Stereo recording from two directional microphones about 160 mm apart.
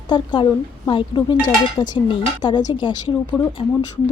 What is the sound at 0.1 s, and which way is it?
Speech, 30° left (ahead or behind).